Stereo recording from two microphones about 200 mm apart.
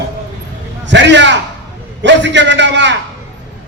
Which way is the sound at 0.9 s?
60° right (ahead or behind).